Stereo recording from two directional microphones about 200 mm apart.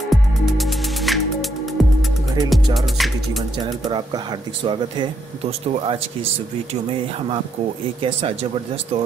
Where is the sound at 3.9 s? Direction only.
20° right (ahead or behind).